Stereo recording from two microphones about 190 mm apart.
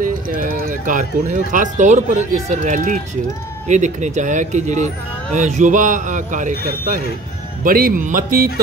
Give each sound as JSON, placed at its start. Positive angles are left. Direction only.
{"t": 0.0, "sound": "speech", "side_deg": -45}